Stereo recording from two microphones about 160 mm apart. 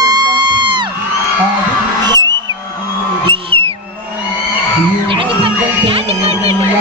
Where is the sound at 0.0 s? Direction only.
25° right (ahead or behind).